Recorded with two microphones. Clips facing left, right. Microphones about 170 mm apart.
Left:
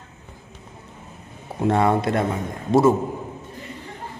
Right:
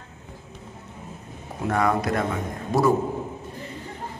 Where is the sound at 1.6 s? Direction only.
25° left (ahead or behind).